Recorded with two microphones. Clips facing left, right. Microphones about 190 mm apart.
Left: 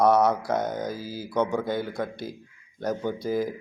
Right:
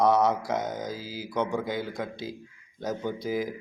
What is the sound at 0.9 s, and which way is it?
Speech, 60° left (ahead or behind).